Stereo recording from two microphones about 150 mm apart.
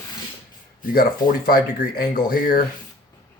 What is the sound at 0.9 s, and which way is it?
Speech, 75° left (ahead or behind).